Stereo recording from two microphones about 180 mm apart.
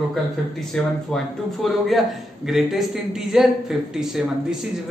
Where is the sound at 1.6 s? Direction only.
Centre (ahead or behind).